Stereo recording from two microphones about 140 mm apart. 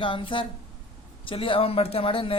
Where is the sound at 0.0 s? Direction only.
35° left (ahead or behind).